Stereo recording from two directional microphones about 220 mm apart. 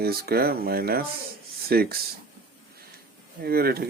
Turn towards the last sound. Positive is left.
turn(degrees=-45)  # may be behind; listen again after turning